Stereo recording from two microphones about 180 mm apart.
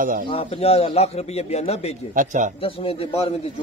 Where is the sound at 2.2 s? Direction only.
45° right (ahead or behind).